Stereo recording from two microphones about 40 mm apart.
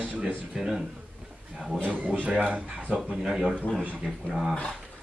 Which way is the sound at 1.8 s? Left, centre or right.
Right.